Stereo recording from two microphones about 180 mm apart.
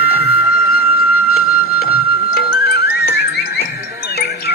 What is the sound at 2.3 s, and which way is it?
Music, 55° left (ahead or behind).